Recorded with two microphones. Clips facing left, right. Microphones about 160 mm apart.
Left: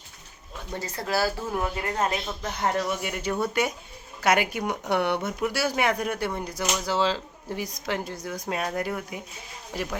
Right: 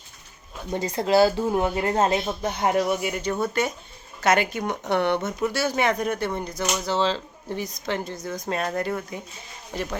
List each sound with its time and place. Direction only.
0.7 s speech: 20° right (ahead or behind)
2.6 s speech: 15° right (ahead or behind)
3.1 s speech: centre (ahead or behind)